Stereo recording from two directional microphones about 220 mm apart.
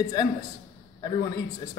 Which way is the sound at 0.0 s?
15° left (ahead or behind).